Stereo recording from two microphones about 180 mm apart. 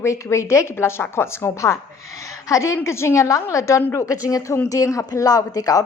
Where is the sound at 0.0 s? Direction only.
15° left (ahead or behind).